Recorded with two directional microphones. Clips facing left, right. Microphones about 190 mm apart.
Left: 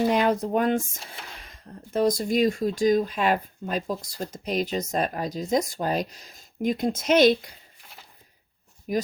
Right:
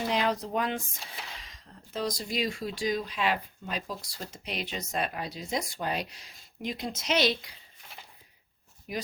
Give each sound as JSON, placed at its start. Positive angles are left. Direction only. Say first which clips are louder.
{"t": 0.1, "sound": "speech", "louder": "left 6 dB", "side_deg": 50}
{"t": 8.9, "sound": "speech", "louder": "left 9 dB", "side_deg": 40}